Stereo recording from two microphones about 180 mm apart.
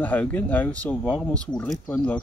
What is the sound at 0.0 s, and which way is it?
Speech, 10° left (ahead or behind).